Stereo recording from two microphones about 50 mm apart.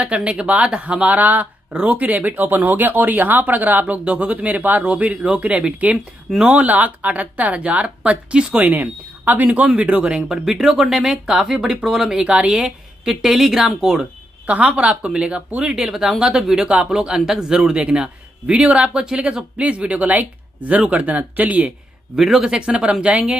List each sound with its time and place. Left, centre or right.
0.0 s speech: right
8.6 s speech: right
9.5 s speech: right
10.2 s a man's voice: centre
12.2 s a woman's voice: right
14.4 s a man's voice: right
22.1 s a man's voice: centre